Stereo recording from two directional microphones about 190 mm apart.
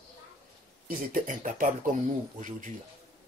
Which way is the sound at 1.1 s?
45° right (ahead or behind).